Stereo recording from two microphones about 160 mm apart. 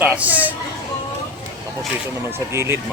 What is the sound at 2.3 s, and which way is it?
Speech, 15° right (ahead or behind).